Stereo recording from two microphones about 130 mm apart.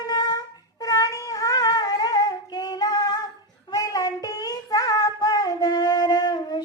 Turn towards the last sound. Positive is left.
turn(degrees=30)  # may be behind; listen again after turning